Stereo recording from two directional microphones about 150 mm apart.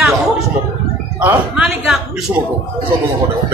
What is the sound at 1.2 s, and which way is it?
Speech, 5° right (ahead or behind).